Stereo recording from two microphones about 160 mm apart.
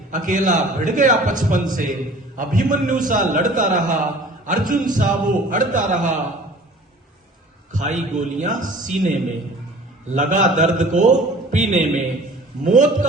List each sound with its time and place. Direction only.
0.1 s a man's voice: 55° right (ahead or behind)
7.7 s a man's voice: 50° right (ahead or behind)
10.2 s a man's voice: 50° right (ahead or behind)